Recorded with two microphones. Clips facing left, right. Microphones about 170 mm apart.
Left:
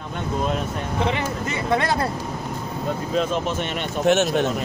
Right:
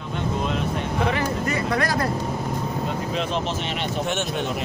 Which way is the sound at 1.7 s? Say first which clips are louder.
Left 5 dB; 25° left (ahead or behind).